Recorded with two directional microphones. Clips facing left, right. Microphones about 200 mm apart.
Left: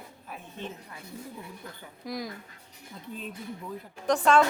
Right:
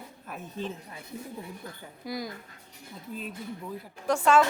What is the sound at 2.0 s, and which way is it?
Speech, centre (ahead or behind).